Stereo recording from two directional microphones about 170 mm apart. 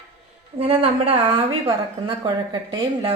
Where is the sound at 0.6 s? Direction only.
35° right (ahead or behind).